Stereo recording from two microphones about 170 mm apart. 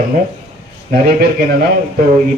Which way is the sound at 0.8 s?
65° right (ahead or behind).